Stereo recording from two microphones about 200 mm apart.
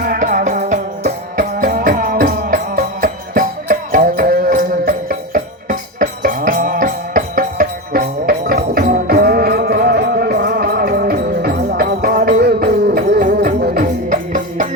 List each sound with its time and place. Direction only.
0.0 s music: 45° right (ahead or behind)